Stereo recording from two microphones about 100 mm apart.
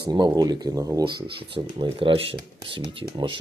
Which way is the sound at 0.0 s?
45° right (ahead or behind).